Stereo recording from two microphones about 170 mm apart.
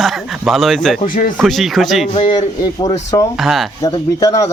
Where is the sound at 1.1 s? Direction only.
50° left (ahead or behind).